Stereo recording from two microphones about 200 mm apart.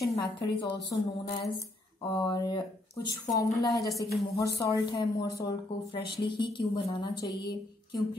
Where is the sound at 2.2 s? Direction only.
20° left (ahead or behind).